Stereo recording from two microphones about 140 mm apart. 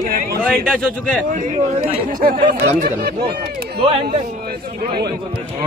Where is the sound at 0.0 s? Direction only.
90° right.